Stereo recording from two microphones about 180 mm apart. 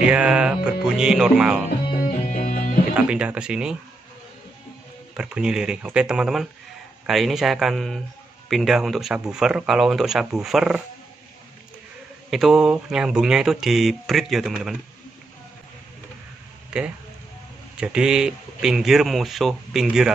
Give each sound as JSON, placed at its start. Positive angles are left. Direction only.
{"t": 0.0, "sound": "speech", "side_deg": -5}
{"t": 2.0, "sound": "music", "side_deg": 55}
{"t": 3.0, "sound": "speech", "side_deg": -5}
{"t": 5.1, "sound": "speech", "side_deg": -5}
{"t": 12.3, "sound": "speech", "side_deg": 0}
{"t": 16.7, "sound": "speech", "side_deg": -5}